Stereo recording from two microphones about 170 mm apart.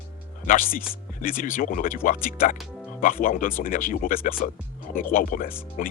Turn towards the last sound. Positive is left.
turn(degrees=50)  # may be behind; listen again after turning